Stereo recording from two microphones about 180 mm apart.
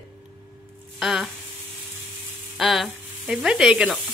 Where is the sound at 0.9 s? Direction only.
Centre (ahead or behind).